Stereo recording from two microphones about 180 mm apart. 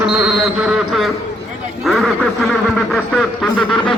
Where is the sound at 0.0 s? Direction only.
5° right (ahead or behind).